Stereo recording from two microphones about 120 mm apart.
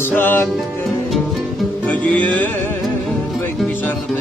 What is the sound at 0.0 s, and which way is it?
Music, 15° left (ahead or behind).